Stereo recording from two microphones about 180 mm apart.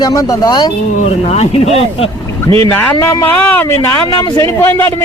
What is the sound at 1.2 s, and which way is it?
Speech, 35° left (ahead or behind).